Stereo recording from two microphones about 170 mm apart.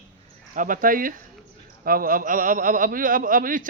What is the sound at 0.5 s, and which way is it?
A man's voice, 50° right (ahead or behind).